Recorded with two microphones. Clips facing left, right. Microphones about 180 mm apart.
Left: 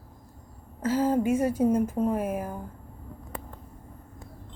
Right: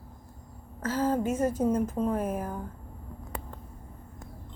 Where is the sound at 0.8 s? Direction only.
10° left (ahead or behind).